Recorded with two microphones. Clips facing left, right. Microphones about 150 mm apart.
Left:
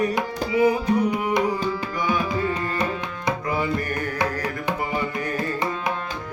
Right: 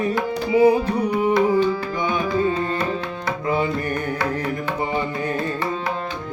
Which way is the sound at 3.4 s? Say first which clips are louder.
Right 6 dB; 25° right (ahead or behind).